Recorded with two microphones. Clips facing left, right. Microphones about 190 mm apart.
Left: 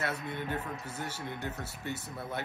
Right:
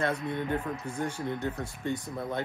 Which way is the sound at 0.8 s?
5° left (ahead or behind).